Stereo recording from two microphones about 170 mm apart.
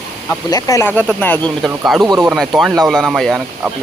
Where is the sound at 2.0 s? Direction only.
25° right (ahead or behind).